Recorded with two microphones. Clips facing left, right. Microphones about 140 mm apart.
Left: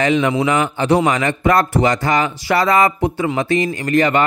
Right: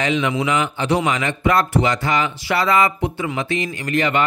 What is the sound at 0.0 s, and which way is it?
A man's voice, 45° left (ahead or behind).